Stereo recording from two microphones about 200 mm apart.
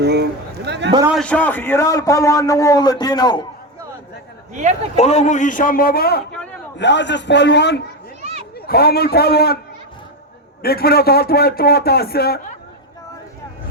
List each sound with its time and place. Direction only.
0.0 s a sound: 55° right (ahead or behind)
1.2 s a man's voice: 5° left (ahead or behind)
4.9 s a man's voice: 35° left (ahead or behind); by 6.2 s 50° left (ahead or behind)
6.7 s a man's voice: 60° left (ahead or behind)
8.2 s a sound: 35° right (ahead or behind)
8.5 s a man's voice: 50° left (ahead or behind)
10.6 s a man's voice: 50° left (ahead or behind)